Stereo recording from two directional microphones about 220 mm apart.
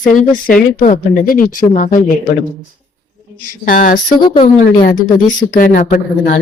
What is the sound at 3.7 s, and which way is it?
Speech, 35° left (ahead or behind).